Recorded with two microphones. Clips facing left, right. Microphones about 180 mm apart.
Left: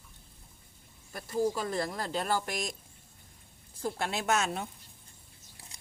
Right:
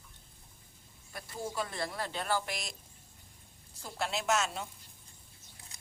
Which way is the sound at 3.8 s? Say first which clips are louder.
Left 3 dB; 55° left (ahead or behind).